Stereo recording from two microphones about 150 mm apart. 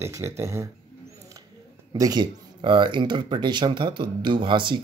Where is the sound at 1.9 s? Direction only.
25° right (ahead or behind).